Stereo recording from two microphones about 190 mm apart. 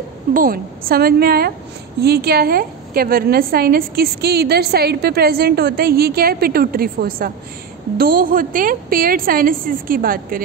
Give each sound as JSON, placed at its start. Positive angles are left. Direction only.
{"t": 0.3, "sound": "a woman's voice", "side_deg": -50}